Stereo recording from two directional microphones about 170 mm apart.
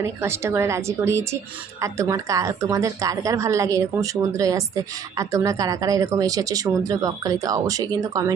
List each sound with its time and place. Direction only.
0.0 s a woman's voice: 15° right (ahead or behind)